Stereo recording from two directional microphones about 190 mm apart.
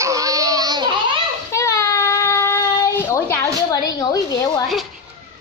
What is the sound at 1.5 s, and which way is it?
Child singing, 15° left (ahead or behind).